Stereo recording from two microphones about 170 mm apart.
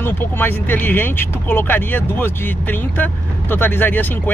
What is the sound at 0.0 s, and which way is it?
Speech, 10° left (ahead or behind).